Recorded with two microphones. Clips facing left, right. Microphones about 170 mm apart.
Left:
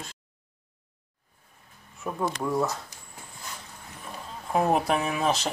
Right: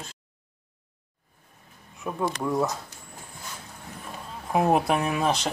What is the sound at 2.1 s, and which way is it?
Speech, 5° right (ahead or behind).